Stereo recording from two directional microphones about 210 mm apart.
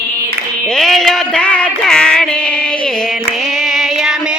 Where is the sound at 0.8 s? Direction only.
Centre (ahead or behind).